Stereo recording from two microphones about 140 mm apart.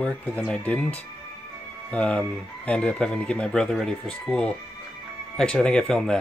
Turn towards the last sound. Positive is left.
turn(degrees=5)  # may be behind; listen again after turning